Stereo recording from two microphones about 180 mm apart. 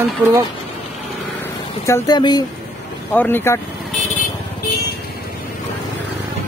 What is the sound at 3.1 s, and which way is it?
Speech, 10° left (ahead or behind).